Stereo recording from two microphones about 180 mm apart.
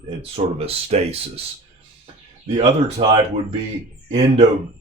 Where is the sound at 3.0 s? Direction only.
40° right (ahead or behind).